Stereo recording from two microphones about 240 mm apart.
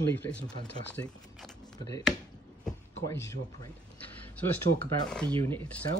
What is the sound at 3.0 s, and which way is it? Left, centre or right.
Speech, centre.